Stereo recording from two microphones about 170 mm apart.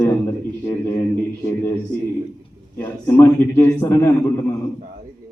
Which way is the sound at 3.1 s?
10° left (ahead or behind).